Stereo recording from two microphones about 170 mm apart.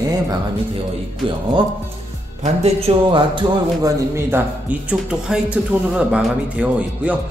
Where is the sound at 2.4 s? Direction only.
35° right (ahead or behind).